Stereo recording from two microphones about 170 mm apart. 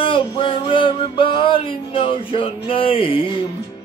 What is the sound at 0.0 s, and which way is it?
Music, 30° left (ahead or behind).